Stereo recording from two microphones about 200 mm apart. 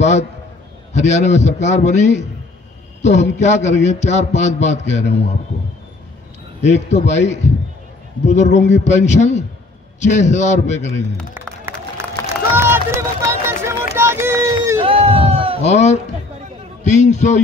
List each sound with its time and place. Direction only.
0.9 s a man's voice: 35° left (ahead or behind)
6.6 s a man's voice: 35° left (ahead or behind)
11.7 s a sound: 10° right (ahead or behind)
12.5 s run: 10° right (ahead or behind)
14.8 s a sound: 30° right (ahead or behind)
15.6 s a man's voice: 35° left (ahead or behind)